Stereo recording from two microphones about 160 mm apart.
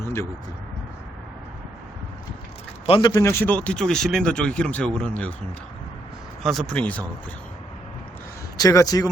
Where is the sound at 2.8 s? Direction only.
35° left (ahead or behind).